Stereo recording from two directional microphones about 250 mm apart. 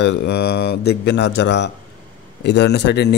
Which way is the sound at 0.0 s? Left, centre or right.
Left.